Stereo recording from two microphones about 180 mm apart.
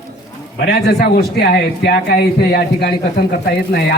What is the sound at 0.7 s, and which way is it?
A man's voice, 60° left (ahead or behind).